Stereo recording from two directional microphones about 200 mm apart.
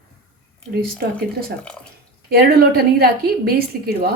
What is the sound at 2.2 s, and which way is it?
A woman's voice, 50° right (ahead or behind).